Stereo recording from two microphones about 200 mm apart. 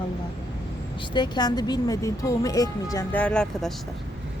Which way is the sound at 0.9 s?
20° left (ahead or behind).